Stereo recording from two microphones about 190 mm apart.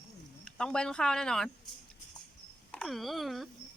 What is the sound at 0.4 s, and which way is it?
Speech, 5° left (ahead or behind).